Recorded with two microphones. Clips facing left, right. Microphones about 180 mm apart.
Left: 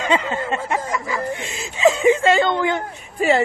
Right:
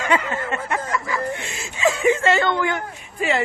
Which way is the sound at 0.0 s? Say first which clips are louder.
Left 1 dB; 25° left (ahead or behind).